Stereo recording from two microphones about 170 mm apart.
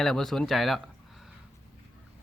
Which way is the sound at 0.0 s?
Centre (ahead or behind).